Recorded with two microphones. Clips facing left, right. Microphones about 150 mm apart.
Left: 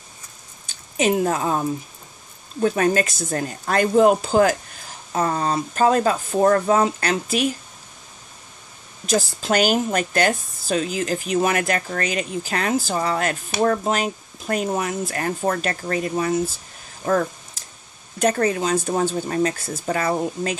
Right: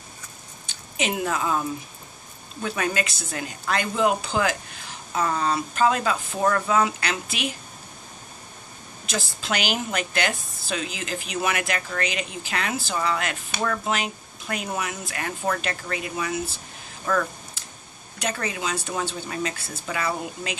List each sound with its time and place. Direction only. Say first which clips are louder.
0.7 s a woman's voice: left 8 dB; 40° left (ahead or behind)
9.0 s a woman's voice: left 9 dB; 40° left (ahead or behind)
17.0 s a sound: left 4 dB; 40° left (ahead or behind)
18.2 s a woman's voice: left 9 dB; 45° left (ahead or behind)